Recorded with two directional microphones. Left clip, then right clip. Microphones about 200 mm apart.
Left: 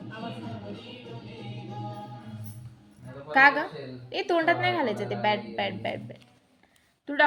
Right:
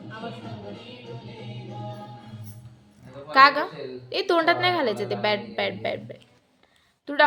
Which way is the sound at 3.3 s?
25° right (ahead or behind).